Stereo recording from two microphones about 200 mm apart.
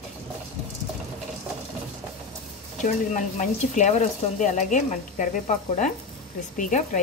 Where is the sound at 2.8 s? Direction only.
40° left (ahead or behind).